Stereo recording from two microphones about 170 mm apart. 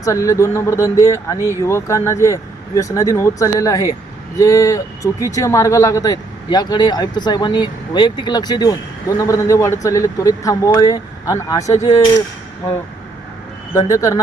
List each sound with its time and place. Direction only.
0.0 s speech: 20° left (ahead or behind)
13.7 s speech: 20° left (ahead or behind)